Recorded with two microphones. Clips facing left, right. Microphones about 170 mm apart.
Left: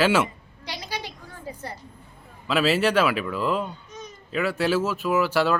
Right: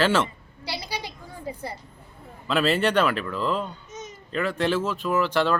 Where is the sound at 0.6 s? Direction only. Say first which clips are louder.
Right 1 dB; 10° right (ahead or behind).